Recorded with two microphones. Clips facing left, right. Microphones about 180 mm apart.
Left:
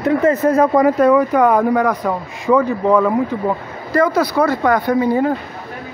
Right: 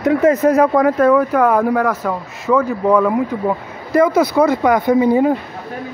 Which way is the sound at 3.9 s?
20° right (ahead or behind).